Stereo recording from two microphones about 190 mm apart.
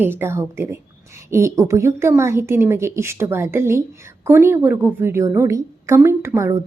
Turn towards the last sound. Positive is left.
turn(degrees=-15)  # may be behind; listen again after turning